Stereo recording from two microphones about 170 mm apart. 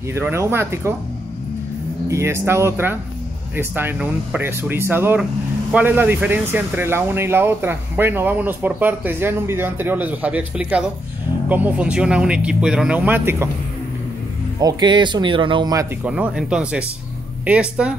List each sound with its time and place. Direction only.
0.1 s speech: 15° right (ahead or behind)
2.0 s speech: 15° right (ahead or behind)
14.6 s speech: 25° right (ahead or behind)
16.1 s speech: 5° right (ahead or behind)